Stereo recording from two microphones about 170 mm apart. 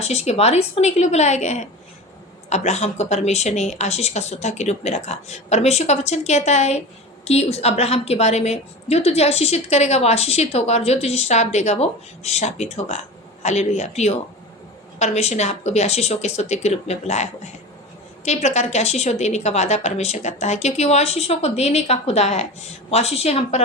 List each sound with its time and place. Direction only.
0.0 s a woman's voice: 40° left (ahead or behind)